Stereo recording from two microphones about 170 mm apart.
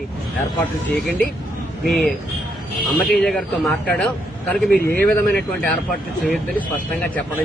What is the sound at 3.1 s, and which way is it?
Speech, 5° left (ahead or behind).